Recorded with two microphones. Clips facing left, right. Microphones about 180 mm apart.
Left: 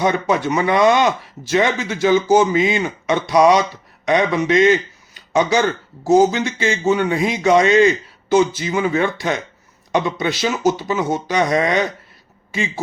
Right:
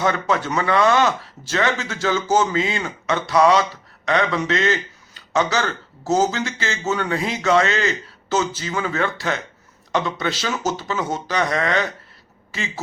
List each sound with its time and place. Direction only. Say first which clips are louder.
0.0 s speech: left 3 dB; 15° left (ahead or behind)